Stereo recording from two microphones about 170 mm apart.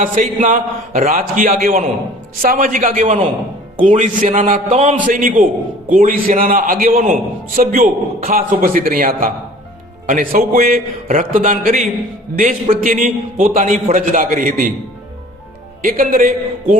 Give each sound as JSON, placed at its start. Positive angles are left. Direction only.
{"t": 0.0, "sound": "a man's voice", "side_deg": -50}
{"t": 15.8, "sound": "a man's voice", "side_deg": -55}